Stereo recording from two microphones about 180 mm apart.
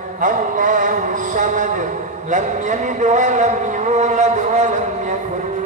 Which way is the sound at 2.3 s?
45° right (ahead or behind).